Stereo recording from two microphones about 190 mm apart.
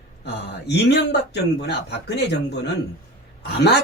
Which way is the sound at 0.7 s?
60° left (ahead or behind).